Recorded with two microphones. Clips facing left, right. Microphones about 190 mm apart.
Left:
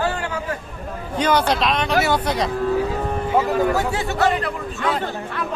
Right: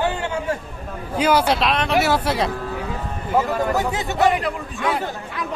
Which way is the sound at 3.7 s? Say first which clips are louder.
Left 1 dB; 20° right (ahead or behind).